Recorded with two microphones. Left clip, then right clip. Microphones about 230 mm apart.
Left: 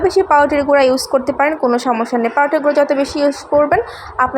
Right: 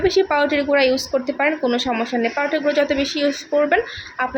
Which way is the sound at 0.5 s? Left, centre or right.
Centre.